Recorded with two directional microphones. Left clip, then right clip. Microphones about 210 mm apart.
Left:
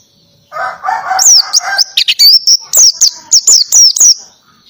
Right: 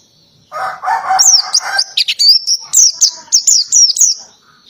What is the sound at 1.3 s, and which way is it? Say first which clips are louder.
Chirp: left 4 dB; 20° left (ahead or behind).